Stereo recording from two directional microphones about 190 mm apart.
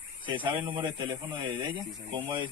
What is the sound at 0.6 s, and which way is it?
Speech, 25° right (ahead or behind).